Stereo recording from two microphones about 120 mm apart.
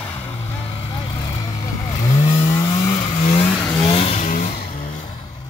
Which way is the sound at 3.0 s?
70° left (ahead or behind).